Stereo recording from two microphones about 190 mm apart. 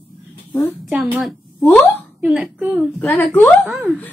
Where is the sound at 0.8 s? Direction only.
Centre (ahead or behind).